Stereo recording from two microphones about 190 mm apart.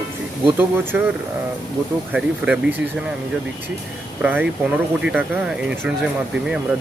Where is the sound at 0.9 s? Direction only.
5° right (ahead or behind).